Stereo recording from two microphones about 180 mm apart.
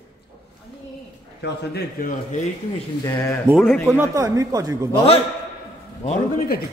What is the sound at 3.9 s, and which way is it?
Speech, 15° right (ahead or behind).